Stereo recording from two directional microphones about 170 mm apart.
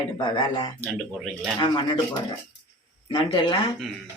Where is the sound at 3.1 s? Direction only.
30° left (ahead or behind).